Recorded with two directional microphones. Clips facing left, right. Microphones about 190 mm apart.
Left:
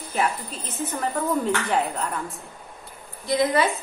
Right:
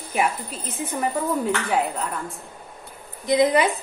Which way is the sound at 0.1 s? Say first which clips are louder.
Right 2 dB; 10° right (ahead or behind).